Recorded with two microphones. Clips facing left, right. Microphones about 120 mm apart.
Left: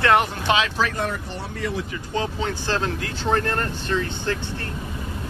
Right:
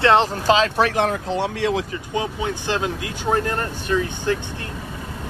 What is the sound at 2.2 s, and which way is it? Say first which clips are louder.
Speech: right 1 dB; 15° right (ahead or behind).